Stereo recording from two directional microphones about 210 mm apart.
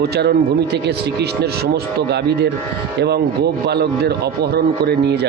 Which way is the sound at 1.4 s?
50° right (ahead or behind).